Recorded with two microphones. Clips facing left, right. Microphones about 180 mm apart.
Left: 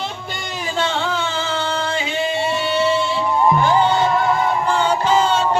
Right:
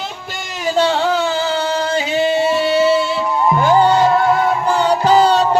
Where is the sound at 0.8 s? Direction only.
40° right (ahead or behind).